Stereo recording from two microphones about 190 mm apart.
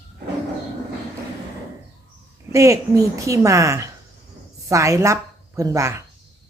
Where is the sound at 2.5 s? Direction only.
15° right (ahead or behind).